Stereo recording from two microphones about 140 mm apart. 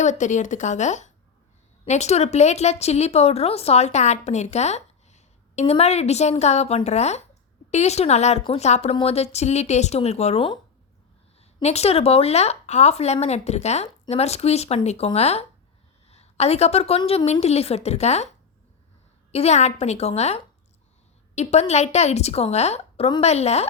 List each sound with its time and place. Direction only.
0.0 s a woman's voice: 60° left (ahead or behind)
19.3 s a woman's voice: 50° left (ahead or behind)